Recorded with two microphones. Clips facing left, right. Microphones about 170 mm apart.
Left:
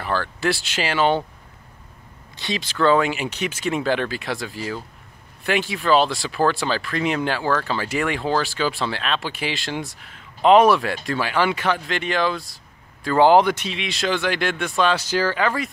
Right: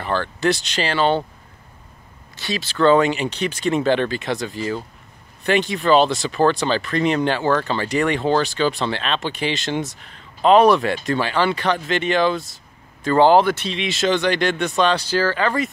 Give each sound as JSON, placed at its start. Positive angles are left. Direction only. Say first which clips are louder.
{"t": 0.0, "sound": "speech", "louder": "right 3 dB", "side_deg": 5}
{"t": 2.3, "sound": "speech", "louder": "right 1 dB", "side_deg": 20}
{"t": 2.8, "sound": "speech", "louder": "right 3 dB", "side_deg": 5}
{"t": 10.4, "sound": "speech", "louder": "right 1 dB", "side_deg": 15}
{"t": 13.8, "sound": "speech", "louder": "right 4 dB", "side_deg": 0}